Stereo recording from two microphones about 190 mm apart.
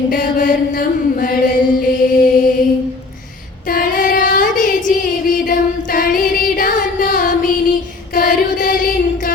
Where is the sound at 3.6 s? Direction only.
50° left (ahead or behind).